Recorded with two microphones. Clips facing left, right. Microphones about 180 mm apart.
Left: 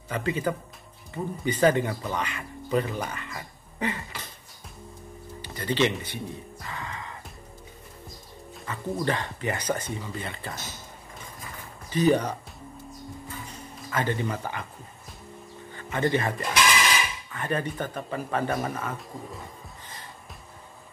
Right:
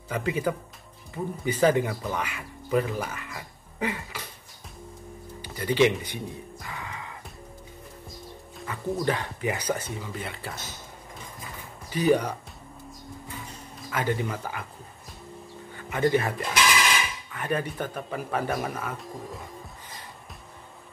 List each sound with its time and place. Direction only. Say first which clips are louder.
0.1 s speech: even; 10° right (ahead or behind)
5.4 s speech: right 3 dB; 10° right (ahead or behind)
8.6 s speech: right 1 dB; 10° right (ahead or behind)
11.9 s speech: even; 10° right (ahead or behind)
13.8 s speech: even; 10° right (ahead or behind)
15.7 s speech: right 2 dB; 5° right (ahead or behind)